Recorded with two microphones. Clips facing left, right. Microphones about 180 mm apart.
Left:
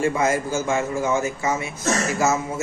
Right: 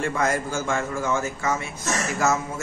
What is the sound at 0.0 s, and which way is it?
Speech, 5° left (ahead or behind).